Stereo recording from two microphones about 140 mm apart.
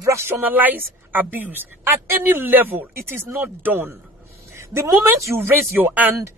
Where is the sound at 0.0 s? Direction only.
20° right (ahead or behind).